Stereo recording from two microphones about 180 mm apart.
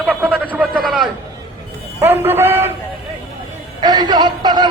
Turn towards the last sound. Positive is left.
turn(degrees=-25)  # may be behind; listen again after turning